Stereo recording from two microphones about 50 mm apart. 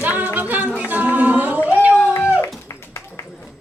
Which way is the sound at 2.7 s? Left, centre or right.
Left.